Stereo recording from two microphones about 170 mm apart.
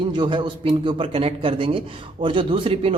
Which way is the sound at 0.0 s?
25° right (ahead or behind).